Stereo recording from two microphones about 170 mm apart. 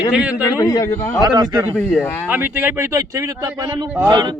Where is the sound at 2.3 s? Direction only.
10° right (ahead or behind).